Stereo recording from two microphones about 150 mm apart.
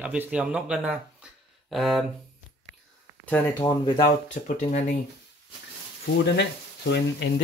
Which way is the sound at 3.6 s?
30° left (ahead or behind).